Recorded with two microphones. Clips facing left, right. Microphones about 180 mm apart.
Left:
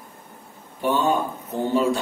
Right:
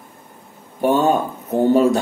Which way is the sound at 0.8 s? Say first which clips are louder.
Right 5 dB; 45° right (ahead or behind).